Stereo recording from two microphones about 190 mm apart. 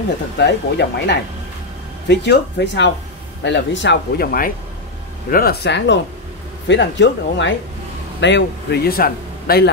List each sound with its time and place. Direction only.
0.4 s a man's voice: 65° left (ahead or behind)